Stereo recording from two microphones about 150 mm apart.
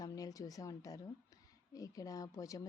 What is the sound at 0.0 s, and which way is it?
A woman's voice, 25° left (ahead or behind).